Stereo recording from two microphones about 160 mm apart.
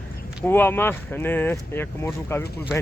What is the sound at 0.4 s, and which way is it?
Speech, 10° left (ahead or behind).